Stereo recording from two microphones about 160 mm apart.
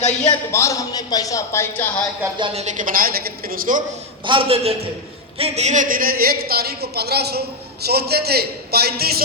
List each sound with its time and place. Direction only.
0.3 s speech: 20° left (ahead or behind)
2.4 s a woman's voice: 40° right (ahead or behind); by 3.8 s 60° right (ahead or behind)
4.3 s a man's voice: 35° right (ahead or behind); by 9.2 s 75° right (ahead or behind)